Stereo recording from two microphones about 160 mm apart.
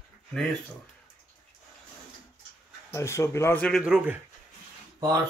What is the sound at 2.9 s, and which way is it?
Speech, 20° left (ahead or behind).